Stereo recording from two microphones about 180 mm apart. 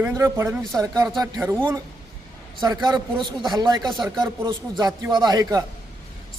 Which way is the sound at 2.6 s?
20° right (ahead or behind).